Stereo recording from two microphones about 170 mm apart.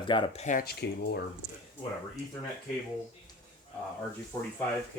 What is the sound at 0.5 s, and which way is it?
Speech, 70° left (ahead or behind).